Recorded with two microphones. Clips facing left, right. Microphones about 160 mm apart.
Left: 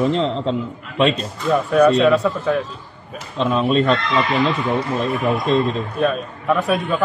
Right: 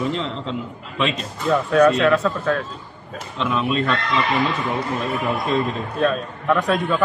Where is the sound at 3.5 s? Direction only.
35° left (ahead or behind).